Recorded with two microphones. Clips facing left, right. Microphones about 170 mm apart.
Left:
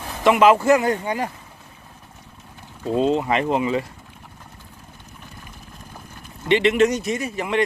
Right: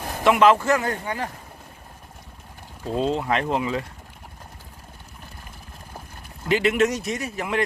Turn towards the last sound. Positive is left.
turn(degrees=0)  # may be behind; listen again after turning